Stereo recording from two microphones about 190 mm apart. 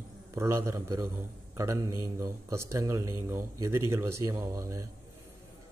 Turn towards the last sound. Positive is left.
turn(degrees=-15)  # may be behind; listen again after turning